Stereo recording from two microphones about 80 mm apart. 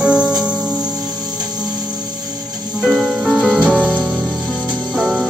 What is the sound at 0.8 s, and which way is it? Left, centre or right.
Music, right.